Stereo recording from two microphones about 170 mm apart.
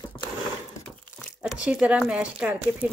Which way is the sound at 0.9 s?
5° left (ahead or behind).